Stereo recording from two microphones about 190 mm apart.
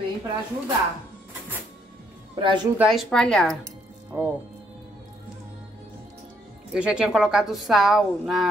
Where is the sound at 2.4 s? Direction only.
25° right (ahead or behind).